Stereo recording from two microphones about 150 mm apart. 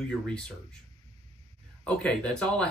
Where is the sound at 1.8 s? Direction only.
5° left (ahead or behind).